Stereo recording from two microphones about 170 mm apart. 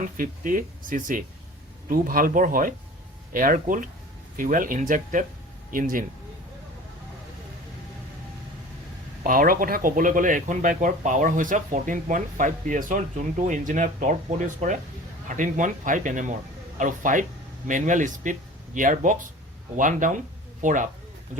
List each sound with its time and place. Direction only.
0.0 s speech: 50° right (ahead or behind)
9.2 s speech: 55° right (ahead or behind)